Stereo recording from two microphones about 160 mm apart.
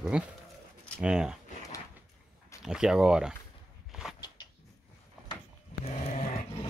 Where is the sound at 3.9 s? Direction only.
5° right (ahead or behind).